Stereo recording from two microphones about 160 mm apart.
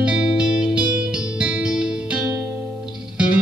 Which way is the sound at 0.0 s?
5° right (ahead or behind).